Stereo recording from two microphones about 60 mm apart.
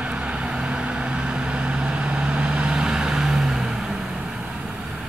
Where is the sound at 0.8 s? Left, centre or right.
Centre.